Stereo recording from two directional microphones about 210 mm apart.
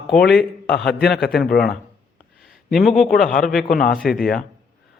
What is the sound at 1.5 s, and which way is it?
Speech, 50° left (ahead or behind).